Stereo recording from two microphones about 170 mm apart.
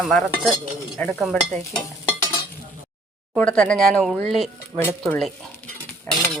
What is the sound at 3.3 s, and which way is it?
Speech, 5° left (ahead or behind).